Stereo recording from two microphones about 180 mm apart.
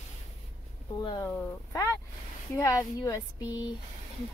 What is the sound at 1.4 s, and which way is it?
Speech, 15° left (ahead or behind).